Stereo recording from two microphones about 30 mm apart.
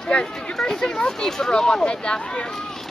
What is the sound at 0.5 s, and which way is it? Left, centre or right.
Speech, centre.